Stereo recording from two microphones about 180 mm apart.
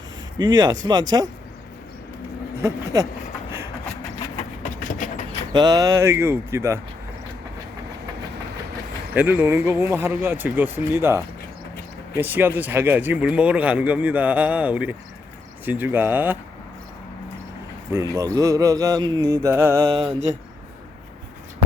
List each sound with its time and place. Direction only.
0.3 s mantra: 25° right (ahead or behind)
2.6 s speech: 20° right (ahead or behind)
4.6 s train: 50° left (ahead or behind)
5.5 s speech: 20° right (ahead or behind)
9.1 s speech: 10° right (ahead or behind)
17.9 s speech: 15° right (ahead or behind)
18.3 s mantra: 20° right (ahead or behind)